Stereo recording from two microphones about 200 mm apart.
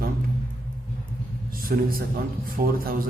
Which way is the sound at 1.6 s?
45° right (ahead or behind).